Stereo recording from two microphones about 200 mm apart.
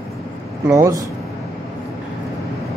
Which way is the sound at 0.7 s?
15° right (ahead or behind).